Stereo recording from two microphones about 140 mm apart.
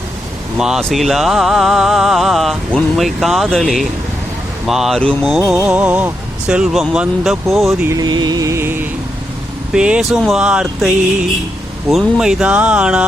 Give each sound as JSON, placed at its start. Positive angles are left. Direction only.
{"t": 0.5, "sound": "speech", "side_deg": -5}
{"t": 7.9, "sound": "music", "side_deg": -30}
{"t": 9.7, "sound": "speech", "side_deg": -5}